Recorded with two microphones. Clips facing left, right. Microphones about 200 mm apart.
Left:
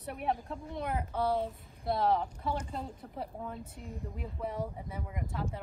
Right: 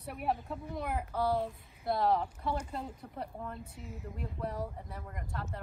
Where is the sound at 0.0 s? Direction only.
Centre (ahead or behind).